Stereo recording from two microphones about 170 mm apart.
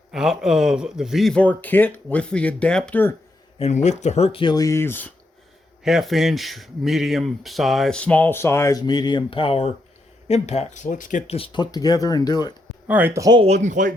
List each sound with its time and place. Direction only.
0.1 s speech: 5° right (ahead or behind)
3.6 s speech: 40° left (ahead or behind); by 5.1 s 10° left (ahead or behind)
5.8 s speech: centre (ahead or behind); by 11.3 s 50° left (ahead or behind)
11.3 s speech: 30° left (ahead or behind)
12.9 s speech: 10° right (ahead or behind)
13.4 s speech: 45° right (ahead or behind)